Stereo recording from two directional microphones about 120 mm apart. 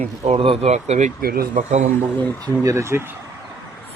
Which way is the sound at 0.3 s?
50° right (ahead or behind).